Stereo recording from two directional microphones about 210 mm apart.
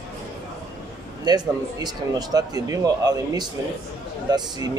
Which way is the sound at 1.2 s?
20° right (ahead or behind).